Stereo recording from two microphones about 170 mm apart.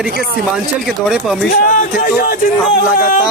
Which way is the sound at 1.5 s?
55° left (ahead or behind).